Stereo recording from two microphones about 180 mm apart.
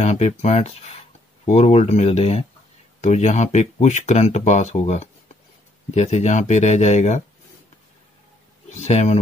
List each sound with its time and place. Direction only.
0.0 s speech: 40° left (ahead or behind)
8.8 s speech: 40° left (ahead or behind)